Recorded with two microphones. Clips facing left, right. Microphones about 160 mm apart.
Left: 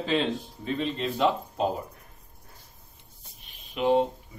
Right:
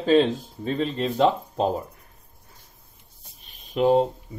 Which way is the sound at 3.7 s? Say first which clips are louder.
Right 4 dB; 35° right (ahead or behind).